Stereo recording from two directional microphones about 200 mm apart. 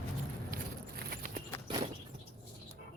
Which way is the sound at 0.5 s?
45° right (ahead or behind).